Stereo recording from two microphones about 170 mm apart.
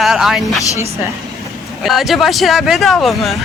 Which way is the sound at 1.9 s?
Centre (ahead or behind).